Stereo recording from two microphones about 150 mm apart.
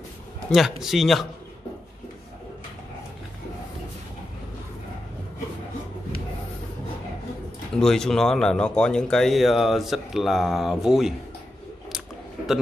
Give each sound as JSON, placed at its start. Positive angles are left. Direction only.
{"t": 0.5, "sound": "speech", "side_deg": -5}
{"t": 7.7, "sound": "speech", "side_deg": 5}